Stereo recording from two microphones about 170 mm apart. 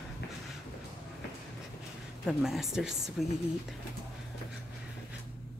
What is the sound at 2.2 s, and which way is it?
Speech, centre (ahead or behind).